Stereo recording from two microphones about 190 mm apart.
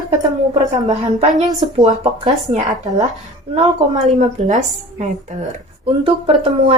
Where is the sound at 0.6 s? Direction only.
20° right (ahead or behind).